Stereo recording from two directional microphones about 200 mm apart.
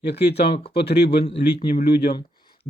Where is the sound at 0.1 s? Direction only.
55° left (ahead or behind).